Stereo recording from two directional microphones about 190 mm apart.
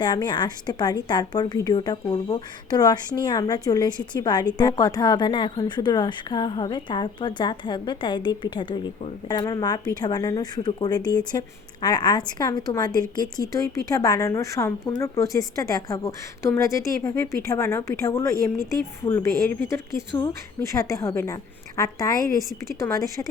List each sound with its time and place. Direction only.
0.0 s a woman's voice: 20° left (ahead or behind)